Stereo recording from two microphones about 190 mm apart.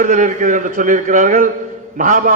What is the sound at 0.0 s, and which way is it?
A man's voice, 40° right (ahead or behind).